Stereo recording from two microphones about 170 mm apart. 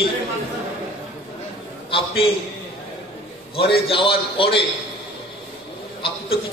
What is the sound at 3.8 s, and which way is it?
Speech, 35° left (ahead or behind).